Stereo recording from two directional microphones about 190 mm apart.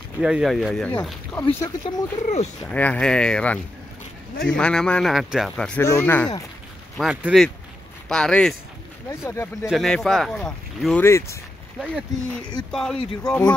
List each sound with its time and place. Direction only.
0.2 s speech: 5° right (ahead or behind)
1.4 s speech: 20° left (ahead or behind)
2.6 s speech: 5° left (ahead or behind)
4.6 s speech: 5° left (ahead or behind)
5.8 s speech: 15° left (ahead or behind)
7.0 s speech: centre (ahead or behind)
9.1 s speech: 15° left (ahead or behind)
9.7 s speech: centre (ahead or behind)